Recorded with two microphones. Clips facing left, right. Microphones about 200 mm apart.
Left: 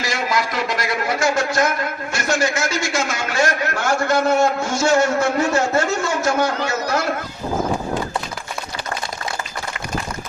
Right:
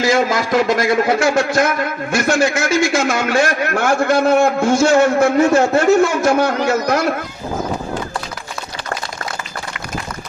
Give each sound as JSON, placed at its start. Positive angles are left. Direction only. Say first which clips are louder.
{"t": 0.0, "sound": "a man's voice", "louder": "right 7 dB", "side_deg": -50}